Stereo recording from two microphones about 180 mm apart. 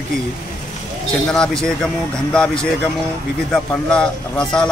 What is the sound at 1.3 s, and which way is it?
Speech, 5° left (ahead or behind).